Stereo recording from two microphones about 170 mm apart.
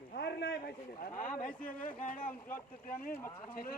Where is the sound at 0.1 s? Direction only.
75° left (ahead or behind).